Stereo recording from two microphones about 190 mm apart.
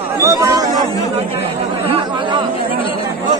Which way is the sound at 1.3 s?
30° right (ahead or behind).